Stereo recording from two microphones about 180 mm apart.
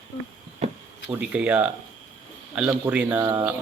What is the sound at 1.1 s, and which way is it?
Speech, 5° right (ahead or behind).